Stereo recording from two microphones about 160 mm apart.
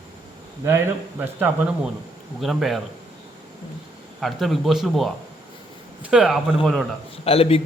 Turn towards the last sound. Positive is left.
turn(degrees=40)  # may be behind; listen again after turning